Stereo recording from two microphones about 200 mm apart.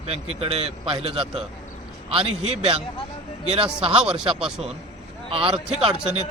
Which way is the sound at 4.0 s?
5° right (ahead or behind).